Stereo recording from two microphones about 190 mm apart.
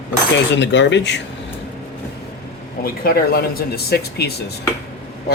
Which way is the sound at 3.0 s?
50° left (ahead or behind).